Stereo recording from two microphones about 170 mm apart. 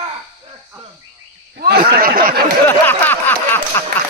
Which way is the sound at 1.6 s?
60° right (ahead or behind).